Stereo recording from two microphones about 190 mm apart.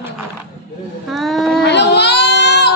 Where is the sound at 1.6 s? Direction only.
65° left (ahead or behind).